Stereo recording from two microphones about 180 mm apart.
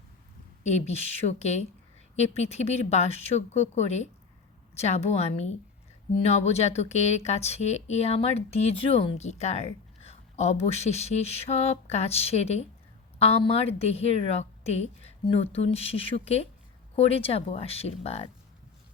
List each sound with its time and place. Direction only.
0.6 s speech: 40° left (ahead or behind)